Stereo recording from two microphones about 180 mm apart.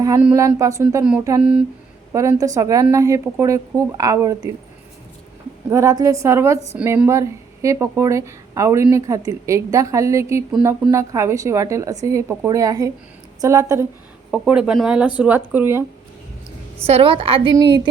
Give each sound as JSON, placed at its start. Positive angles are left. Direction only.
{"t": 0.3, "sound": "speech", "side_deg": -15}
{"t": 1.4, "sound": "speech", "side_deg": -5}
{"t": 2.1, "sound": "a woman's voice", "side_deg": -20}
{"t": 5.6, "sound": "speech", "side_deg": -15}
{"t": 14.3, "sound": "speech", "side_deg": 0}
{"t": 16.8, "sound": "a woman's voice", "side_deg": -30}